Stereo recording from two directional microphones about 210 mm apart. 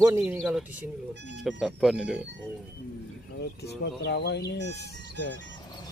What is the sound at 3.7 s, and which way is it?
Speech, 50° left (ahead or behind).